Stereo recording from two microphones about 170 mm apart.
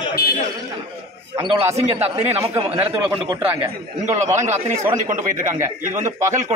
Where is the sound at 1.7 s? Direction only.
40° right (ahead or behind).